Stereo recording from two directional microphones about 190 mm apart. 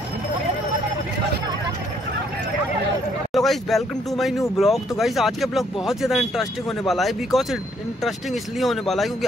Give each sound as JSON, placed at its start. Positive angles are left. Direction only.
{"t": 3.3, "sound": "speech", "side_deg": 0}